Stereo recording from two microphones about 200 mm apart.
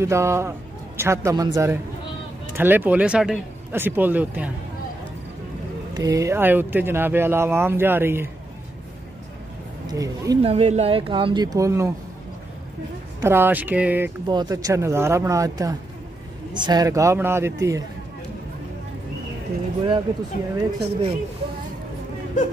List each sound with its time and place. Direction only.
0.0 s speech: 15° right (ahead or behind)
5.9 s speech: 15° right (ahead or behind)
9.8 s speech: 15° right (ahead or behind)
10.4 s speech: 35° right (ahead or behind); by 11.9 s 15° right (ahead or behind)
13.2 s speech: 10° right (ahead or behind)
14.2 s speech: 20° right (ahead or behind)
20.5 s speech: 25° right (ahead or behind)